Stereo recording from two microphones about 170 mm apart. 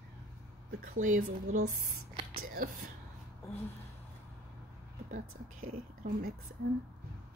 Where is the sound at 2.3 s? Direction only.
55° right (ahead or behind).